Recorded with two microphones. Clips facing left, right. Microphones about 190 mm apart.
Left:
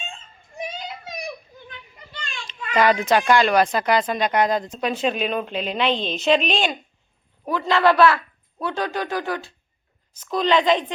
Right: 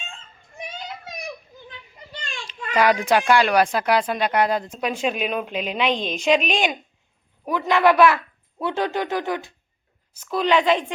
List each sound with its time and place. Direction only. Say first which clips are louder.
2.7 s a woman's voice: even; 10° right (ahead or behind)
10.3 s speech: even; 10° right (ahead or behind)